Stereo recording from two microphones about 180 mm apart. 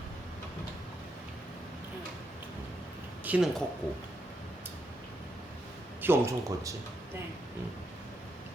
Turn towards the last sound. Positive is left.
turn(degrees=-15)  # may be behind; listen again after turning